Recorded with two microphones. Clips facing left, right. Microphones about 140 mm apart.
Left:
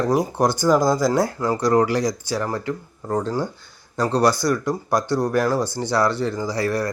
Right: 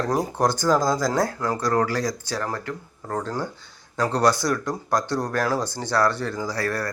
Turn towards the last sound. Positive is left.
turn(degrees=15)  # may be behind; listen again after turning